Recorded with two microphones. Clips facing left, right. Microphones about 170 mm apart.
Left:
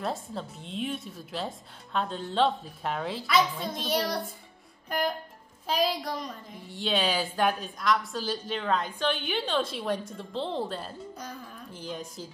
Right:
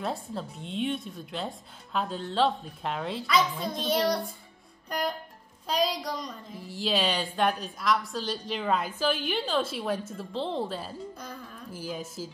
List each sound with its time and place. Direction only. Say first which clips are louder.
0.0 s a child's voice: even; centre (ahead or behind)
4.8 s music: left 1 dB; centre (ahead or behind)
5.7 s a child's voice: even; centre (ahead or behind)